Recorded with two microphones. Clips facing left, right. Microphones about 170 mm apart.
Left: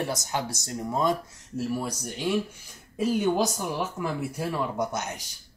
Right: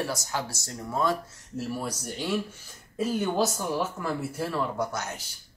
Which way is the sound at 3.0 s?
15° left (ahead or behind).